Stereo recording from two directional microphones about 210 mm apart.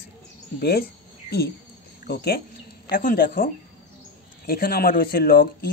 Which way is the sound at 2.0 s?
50° left (ahead or behind).